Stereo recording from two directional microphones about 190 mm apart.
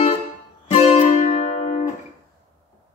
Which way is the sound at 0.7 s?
35° left (ahead or behind).